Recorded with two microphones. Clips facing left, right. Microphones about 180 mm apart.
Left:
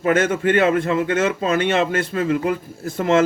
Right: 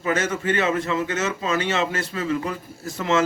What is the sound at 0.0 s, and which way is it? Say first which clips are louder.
A man's voice: left 6 dB; 55° left (ahead or behind).